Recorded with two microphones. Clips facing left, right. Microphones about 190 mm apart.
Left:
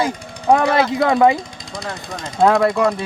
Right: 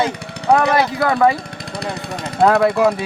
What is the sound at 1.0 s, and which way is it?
Speech, 15° left (ahead or behind).